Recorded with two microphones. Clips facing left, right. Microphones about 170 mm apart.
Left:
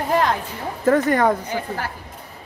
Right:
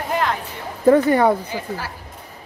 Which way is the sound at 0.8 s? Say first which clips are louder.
Right 3 dB; 10° right (ahead or behind).